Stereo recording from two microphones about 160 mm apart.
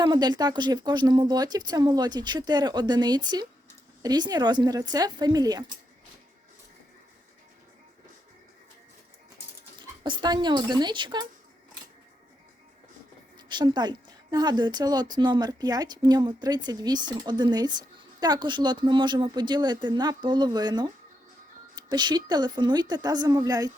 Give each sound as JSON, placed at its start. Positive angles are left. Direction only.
{"t": 0.0, "sound": "speech", "side_deg": -25}
{"t": 10.0, "sound": "speech", "side_deg": -25}
{"t": 13.5, "sound": "speech", "side_deg": -25}